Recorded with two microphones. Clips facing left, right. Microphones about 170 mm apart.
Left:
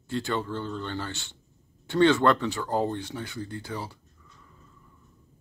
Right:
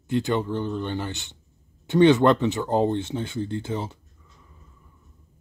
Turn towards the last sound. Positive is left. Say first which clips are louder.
# right 6 dB
turn(degrees=-20)  # may be behind; listen again after turning